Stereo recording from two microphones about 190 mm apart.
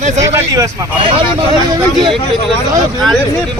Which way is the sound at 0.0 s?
35° right (ahead or behind).